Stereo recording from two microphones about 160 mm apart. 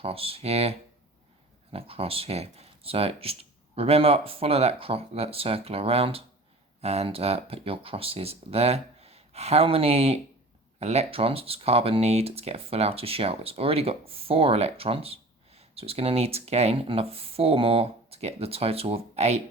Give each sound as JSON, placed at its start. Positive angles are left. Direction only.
{"t": 0.0, "sound": "speech", "side_deg": -35}